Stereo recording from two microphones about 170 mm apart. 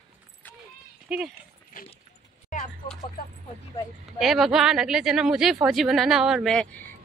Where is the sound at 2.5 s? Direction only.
50° left (ahead or behind).